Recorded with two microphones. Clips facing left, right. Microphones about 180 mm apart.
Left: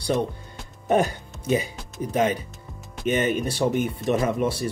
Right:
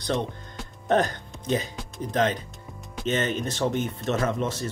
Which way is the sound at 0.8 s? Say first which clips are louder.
Left 2 dB; 10° left (ahead or behind).